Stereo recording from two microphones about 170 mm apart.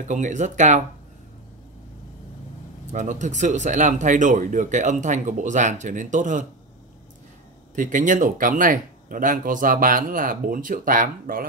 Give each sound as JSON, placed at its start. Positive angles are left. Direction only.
{"t": 0.1, "sound": "speech", "side_deg": -45}
{"t": 2.9, "sound": "speech", "side_deg": -45}
{"t": 7.7, "sound": "speech", "side_deg": -50}